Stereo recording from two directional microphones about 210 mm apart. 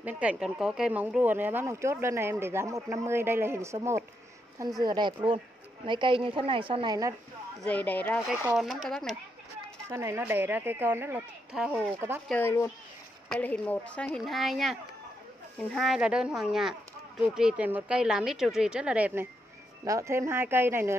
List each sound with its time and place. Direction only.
0.0 s a woman's voice: 5° right (ahead or behind)
7.6 s speech: 5° left (ahead or behind)
8.3 s speech: 5° right (ahead or behind)
9.8 s speech: 15° right (ahead or behind)
12.3 s speech: 10° left (ahead or behind); by 20.9 s 10° right (ahead or behind)